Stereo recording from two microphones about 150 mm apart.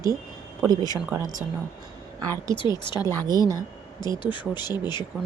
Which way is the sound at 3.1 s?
25° right (ahead or behind).